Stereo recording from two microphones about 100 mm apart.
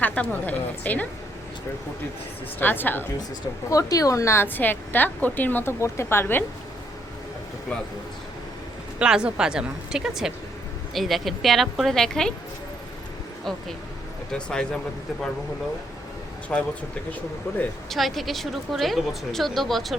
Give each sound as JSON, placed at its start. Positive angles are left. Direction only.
{"t": 0.0, "sound": "a woman's voice", "side_deg": 15}
{"t": 2.6, "sound": "a woman's voice", "side_deg": 20}
{"t": 3.7, "sound": "a woman's voice", "side_deg": 35}
{"t": 9.0, "sound": "a woman's voice", "side_deg": -10}
{"t": 14.3, "sound": "a woman's voice", "side_deg": 10}
{"t": 16.5, "sound": "a woman's voice", "side_deg": 10}
{"t": 17.8, "sound": "a woman's voice", "side_deg": 0}